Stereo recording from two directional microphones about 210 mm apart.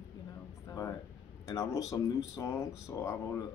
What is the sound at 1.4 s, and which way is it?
Speech, 15° left (ahead or behind).